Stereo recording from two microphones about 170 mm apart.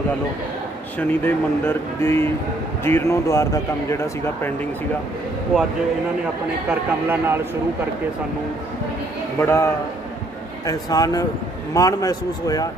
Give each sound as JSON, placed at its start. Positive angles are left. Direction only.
{"t": 0.9, "sound": "speech", "side_deg": 10}
{"t": 6.7, "sound": "speech", "side_deg": -10}
{"t": 9.4, "sound": "a man's voice", "side_deg": 15}